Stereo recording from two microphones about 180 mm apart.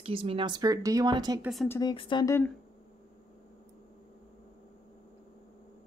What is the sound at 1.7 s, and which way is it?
Speech, 25° left (ahead or behind).